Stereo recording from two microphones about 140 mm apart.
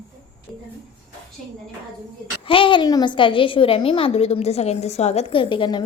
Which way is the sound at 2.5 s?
35° left (ahead or behind).